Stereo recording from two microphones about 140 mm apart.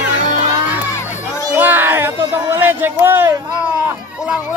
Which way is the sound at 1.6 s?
15° right (ahead or behind).